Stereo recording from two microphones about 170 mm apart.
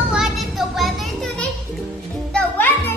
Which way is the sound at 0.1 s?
Centre (ahead or behind).